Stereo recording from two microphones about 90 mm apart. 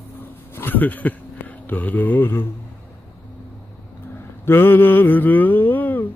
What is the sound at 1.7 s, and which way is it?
Mantra, 20° left (ahead or behind).